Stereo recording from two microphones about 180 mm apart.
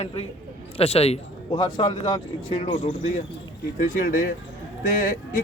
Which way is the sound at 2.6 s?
40° left (ahead or behind).